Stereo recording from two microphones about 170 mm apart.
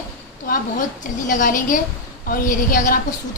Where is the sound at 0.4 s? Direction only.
55° left (ahead or behind).